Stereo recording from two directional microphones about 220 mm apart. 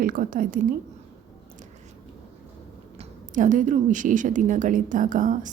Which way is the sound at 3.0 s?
35° right (ahead or behind).